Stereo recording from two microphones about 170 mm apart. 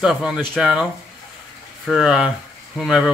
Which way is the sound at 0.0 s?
Centre (ahead or behind).